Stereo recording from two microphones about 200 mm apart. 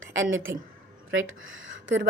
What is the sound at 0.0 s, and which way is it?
A woman's voice, 70° right (ahead or behind).